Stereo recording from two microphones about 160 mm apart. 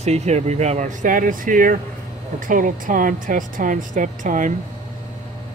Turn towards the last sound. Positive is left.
turn(degrees=-55)  # may be behind; listen again after turning